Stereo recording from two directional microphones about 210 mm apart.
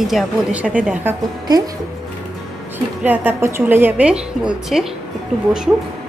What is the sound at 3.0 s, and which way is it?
A woman's voice, 10° right (ahead or behind).